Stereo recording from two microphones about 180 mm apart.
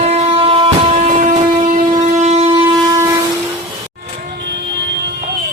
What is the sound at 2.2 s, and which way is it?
Shofar, 40° right (ahead or behind).